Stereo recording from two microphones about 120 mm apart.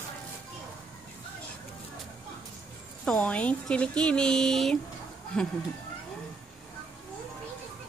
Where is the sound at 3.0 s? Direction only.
10° left (ahead or behind).